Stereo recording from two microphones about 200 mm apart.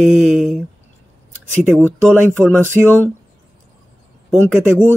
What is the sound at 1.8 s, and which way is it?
Speech, 10° right (ahead or behind).